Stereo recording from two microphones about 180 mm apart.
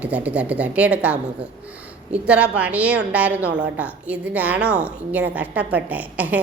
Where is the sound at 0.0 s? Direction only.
10° right (ahead or behind).